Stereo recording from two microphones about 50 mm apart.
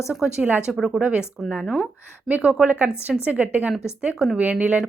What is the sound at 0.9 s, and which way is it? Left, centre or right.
A woman's voice, right.